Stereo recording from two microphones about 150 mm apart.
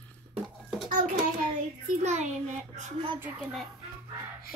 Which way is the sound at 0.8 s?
55° right (ahead or behind).